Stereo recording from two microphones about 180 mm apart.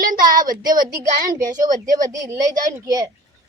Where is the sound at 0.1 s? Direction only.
50° right (ahead or behind).